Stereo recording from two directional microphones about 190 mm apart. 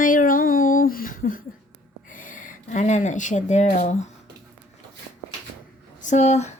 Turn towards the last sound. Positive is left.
turn(degrees=35)  # may be behind; listen again after turning